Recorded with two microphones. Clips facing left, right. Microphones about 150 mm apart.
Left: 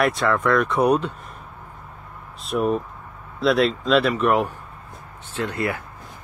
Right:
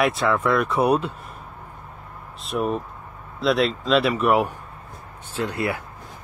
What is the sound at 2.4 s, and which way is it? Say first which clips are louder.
Speech: left 3 dB; centre (ahead or behind).